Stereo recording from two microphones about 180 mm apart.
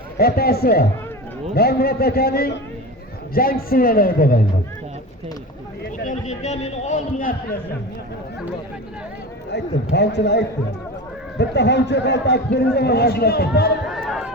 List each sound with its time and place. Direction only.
0.2 s a man's voice: 60° left (ahead or behind)
6.2 s a man's voice: 40° left (ahead or behind)
9.9 s a man's voice: 70° left (ahead or behind)
13.9 s a sound: centre (ahead or behind)